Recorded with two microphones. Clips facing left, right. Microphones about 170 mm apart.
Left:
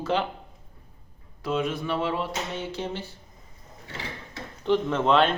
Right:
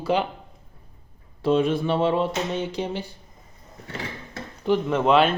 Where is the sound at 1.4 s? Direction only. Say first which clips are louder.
Right 7 dB; 30° right (ahead or behind); by 3.1 s 15° right (ahead or behind).